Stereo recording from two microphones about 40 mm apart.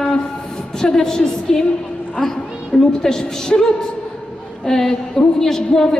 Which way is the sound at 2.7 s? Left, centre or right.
Left.